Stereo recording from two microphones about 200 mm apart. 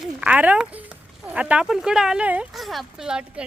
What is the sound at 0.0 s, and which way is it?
A woman's voice, 5° right (ahead or behind).